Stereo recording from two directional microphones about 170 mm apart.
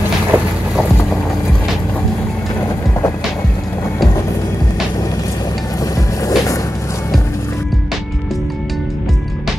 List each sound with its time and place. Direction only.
0.3 s boat: 10° right (ahead or behind)
6.2 s music: 20° left (ahead or behind)